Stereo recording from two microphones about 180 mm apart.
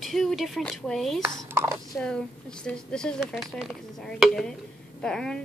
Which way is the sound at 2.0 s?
5° left (ahead or behind).